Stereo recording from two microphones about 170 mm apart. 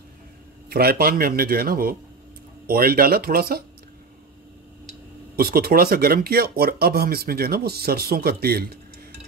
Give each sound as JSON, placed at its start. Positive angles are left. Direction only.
{"t": 0.7, "sound": "speech", "side_deg": -65}
{"t": 5.3, "sound": "speech", "side_deg": -60}